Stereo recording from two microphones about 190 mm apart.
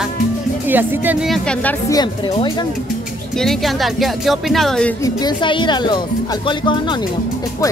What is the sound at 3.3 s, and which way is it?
Speech, centre (ahead or behind).